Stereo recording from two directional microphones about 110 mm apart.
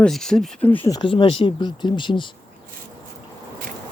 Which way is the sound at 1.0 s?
55° left (ahead or behind).